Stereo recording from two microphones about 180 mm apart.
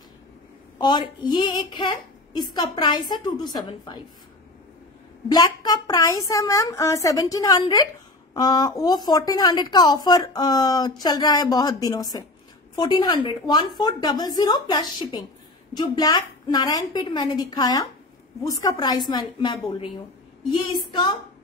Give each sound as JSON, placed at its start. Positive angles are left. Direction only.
{"t": 0.7, "sound": "a woman's voice", "side_deg": 25}
{"t": 5.3, "sound": "a woman's voice", "side_deg": 20}